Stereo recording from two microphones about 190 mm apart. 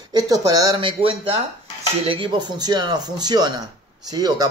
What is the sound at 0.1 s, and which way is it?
Speech, 20° right (ahead or behind).